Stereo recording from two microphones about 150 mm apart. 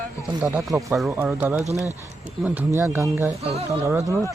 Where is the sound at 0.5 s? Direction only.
20° right (ahead or behind).